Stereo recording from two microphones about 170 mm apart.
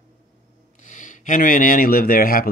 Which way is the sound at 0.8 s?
50° left (ahead or behind).